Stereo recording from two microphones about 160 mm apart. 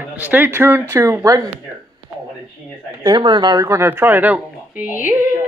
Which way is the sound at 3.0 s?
30° right (ahead or behind).